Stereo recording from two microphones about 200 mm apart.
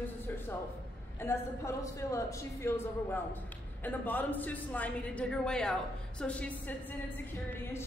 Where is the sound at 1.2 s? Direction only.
15° left (ahead or behind).